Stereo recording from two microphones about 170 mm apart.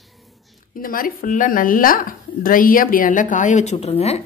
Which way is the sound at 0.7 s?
55° left (ahead or behind).